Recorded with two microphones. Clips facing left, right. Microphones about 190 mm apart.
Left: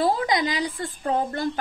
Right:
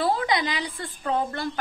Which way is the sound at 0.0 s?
40° left (ahead or behind).